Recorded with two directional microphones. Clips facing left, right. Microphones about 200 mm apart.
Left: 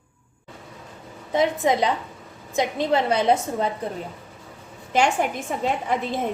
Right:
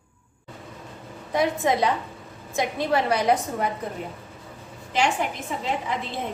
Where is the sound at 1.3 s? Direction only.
20° left (ahead or behind).